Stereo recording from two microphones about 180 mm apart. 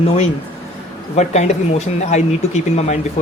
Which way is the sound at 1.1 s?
40° left (ahead or behind).